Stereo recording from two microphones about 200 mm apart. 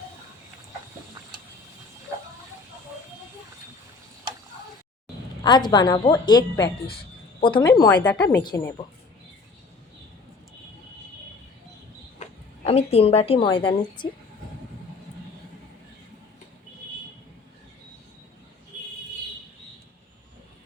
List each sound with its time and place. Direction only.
5.4 s a woman's voice: 20° left (ahead or behind); by 8.3 s 5° left (ahead or behind)
8.4 s a woman's voice: 20° left (ahead or behind)
12.2 s speech: 30° left (ahead or behind)